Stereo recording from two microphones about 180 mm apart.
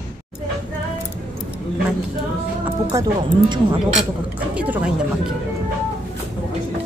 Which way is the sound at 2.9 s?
25° right (ahead or behind).